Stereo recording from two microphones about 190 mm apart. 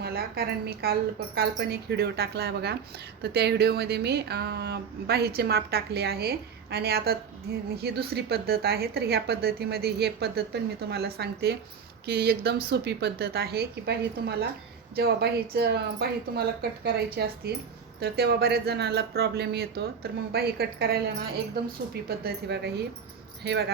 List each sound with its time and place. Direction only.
0.0 s a woman's voice: 55° right (ahead or behind)